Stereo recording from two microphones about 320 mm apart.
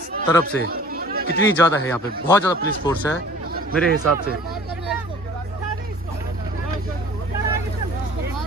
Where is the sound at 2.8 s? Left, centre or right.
Centre.